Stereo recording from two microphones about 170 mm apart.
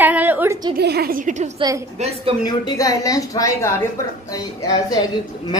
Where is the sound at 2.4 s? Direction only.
20° left (ahead or behind).